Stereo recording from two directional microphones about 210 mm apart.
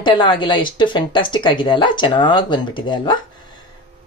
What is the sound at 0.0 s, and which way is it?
Speech, 20° left (ahead or behind).